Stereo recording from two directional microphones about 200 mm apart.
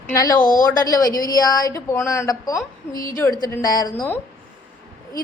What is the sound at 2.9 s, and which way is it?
Speech, 45° left (ahead or behind).